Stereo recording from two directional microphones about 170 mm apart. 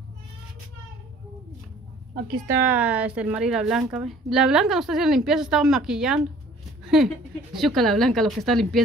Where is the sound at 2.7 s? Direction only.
10° right (ahead or behind).